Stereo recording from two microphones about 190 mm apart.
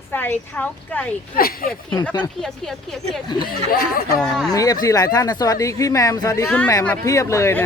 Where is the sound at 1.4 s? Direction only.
50° left (ahead or behind).